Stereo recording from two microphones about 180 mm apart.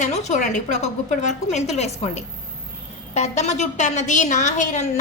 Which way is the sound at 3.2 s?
40° left (ahead or behind).